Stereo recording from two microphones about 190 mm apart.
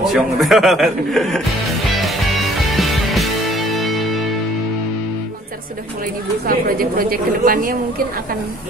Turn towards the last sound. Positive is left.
turn(degrees=-50)  # may be behind; listen again after turning